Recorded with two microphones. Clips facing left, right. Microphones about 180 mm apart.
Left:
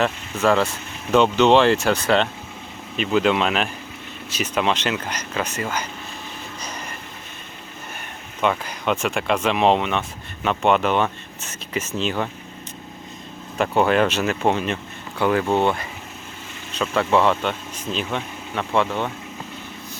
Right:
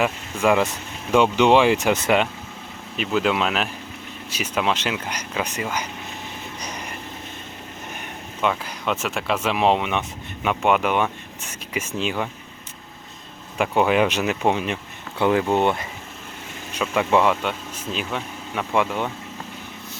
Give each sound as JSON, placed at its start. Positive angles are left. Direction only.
{"t": 0.0, "sound": "speech", "side_deg": -15}
{"t": 8.4, "sound": "speech", "side_deg": 0}
{"t": 13.6, "sound": "speech", "side_deg": -10}